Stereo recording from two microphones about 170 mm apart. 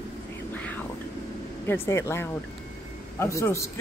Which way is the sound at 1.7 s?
15° left (ahead or behind).